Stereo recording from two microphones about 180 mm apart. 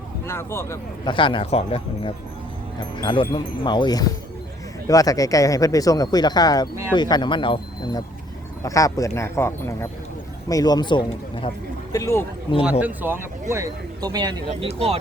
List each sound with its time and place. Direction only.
0.3 s speech: 15° left (ahead or behind)
1.0 s speech: 25° left (ahead or behind)
11.9 s speech: 15° left (ahead or behind)
12.8 s speech: 10° right (ahead or behind)